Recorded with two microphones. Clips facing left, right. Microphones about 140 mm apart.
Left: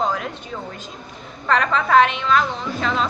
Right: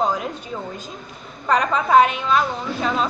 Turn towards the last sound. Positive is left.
turn(degrees=-10)  # may be behind; listen again after turning